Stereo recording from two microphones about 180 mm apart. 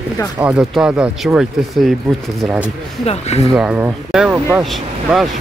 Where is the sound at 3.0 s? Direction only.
35° left (ahead or behind).